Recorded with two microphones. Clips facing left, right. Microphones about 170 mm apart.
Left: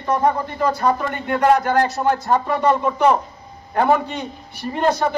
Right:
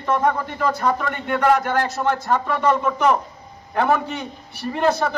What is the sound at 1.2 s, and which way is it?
Speech, 40° left (ahead or behind).